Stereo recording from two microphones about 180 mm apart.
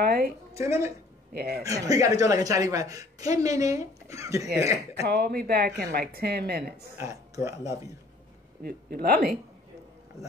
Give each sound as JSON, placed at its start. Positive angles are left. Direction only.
{"t": 0.0, "sound": "a woman's voice", "side_deg": -60}
{"t": 0.6, "sound": "speech", "side_deg": -15}
{"t": 1.3, "sound": "a woman's voice", "side_deg": -60}
{"t": 1.6, "sound": "a woman's voice", "side_deg": -20}
{"t": 5.0, "sound": "a woman's voice", "side_deg": -60}
{"t": 7.0, "sound": "speech", "side_deg": -15}
{"t": 8.6, "sound": "a woman's voice", "side_deg": -55}